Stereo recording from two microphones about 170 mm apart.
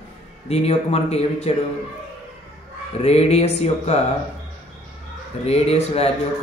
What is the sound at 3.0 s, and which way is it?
A man's voice, 40° left (ahead or behind).